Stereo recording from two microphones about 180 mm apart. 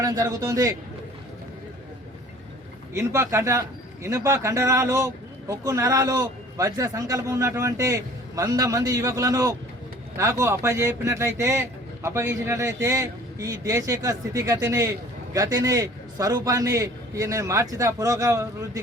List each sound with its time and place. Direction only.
0.0 s a man's voice: 20° right (ahead or behind)
2.9 s speech: 15° right (ahead or behind)